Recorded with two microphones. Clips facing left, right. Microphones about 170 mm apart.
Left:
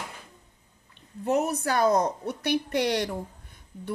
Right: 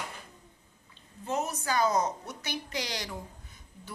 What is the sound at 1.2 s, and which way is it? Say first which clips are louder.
A woman's voice: left 7 dB; 65° left (ahead or behind).